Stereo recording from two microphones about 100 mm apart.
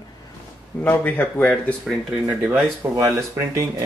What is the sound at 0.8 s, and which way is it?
Speech, 20° left (ahead or behind).